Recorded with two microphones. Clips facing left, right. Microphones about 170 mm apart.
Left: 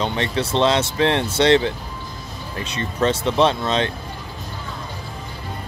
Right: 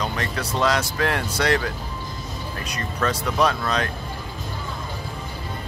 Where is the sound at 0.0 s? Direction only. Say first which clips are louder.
Left 5 dB; 25° left (ahead or behind).